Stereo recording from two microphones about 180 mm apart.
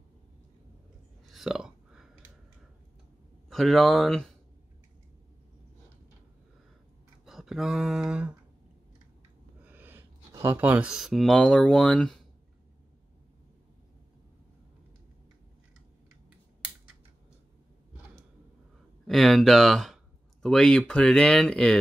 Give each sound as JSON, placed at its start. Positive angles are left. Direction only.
{"t": 1.2, "sound": "burping", "side_deg": 0}
{"t": 3.4, "sound": "speech", "side_deg": 0}
{"t": 7.2, "sound": "speech", "side_deg": 0}
{"t": 9.6, "sound": "speech", "side_deg": -10}
{"t": 19.0, "sound": "speech", "side_deg": 0}